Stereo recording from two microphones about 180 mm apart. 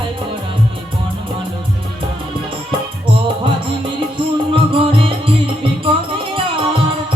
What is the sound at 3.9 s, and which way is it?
Music, 30° right (ahead or behind).